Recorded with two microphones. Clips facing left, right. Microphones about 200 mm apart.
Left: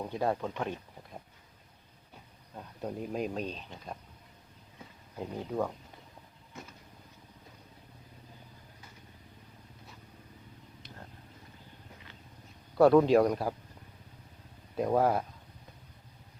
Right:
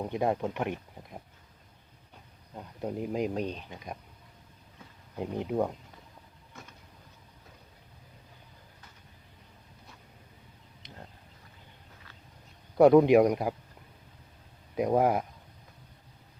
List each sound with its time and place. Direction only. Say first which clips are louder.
0.0 s speech: right 3 dB; 20° right (ahead or behind)
2.6 s speech: right 3 dB; 15° right (ahead or behind)
5.2 s speech: right 4 dB; 15° right (ahead or behind)
12.7 s speech: right 3 dB; 15° right (ahead or behind)
14.8 s speech: right 2 dB; 15° right (ahead or behind)